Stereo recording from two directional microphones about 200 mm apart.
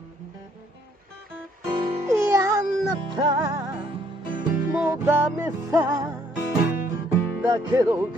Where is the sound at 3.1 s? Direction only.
20° right (ahead or behind).